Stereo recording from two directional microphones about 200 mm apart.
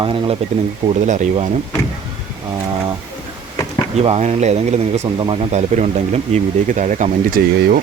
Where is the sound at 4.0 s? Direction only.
30° right (ahead or behind).